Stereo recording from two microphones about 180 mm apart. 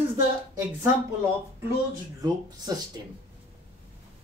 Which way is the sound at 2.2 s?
20° right (ahead or behind).